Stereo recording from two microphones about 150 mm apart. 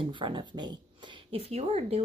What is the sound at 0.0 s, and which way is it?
Speech, 35° right (ahead or behind).